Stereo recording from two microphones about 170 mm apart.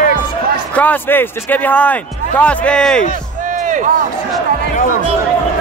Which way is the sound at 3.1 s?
50° right (ahead or behind).